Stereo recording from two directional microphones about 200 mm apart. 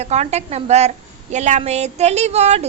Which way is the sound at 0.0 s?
35° right (ahead or behind).